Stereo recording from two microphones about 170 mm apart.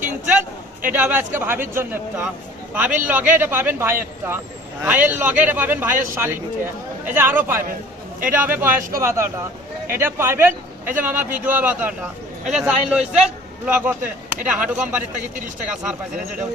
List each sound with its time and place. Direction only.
0.8 s a man's voice: 10° right (ahead or behind)